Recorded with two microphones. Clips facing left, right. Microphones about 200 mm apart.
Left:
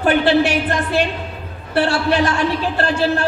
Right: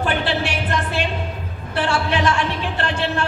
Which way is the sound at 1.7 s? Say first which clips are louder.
Left 5 dB; 40° left (ahead or behind).